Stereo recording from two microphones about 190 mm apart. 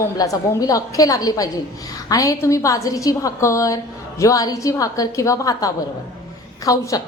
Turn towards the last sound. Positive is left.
turn(degrees=20)  # may be behind; listen again after turning